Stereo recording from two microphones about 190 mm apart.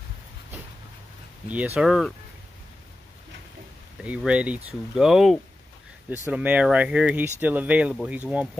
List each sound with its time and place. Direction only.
1.8 s speech: centre (ahead or behind)
4.0 s speech: 5° right (ahead or behind)